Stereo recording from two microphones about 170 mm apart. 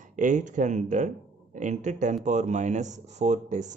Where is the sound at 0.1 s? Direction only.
45° right (ahead or behind).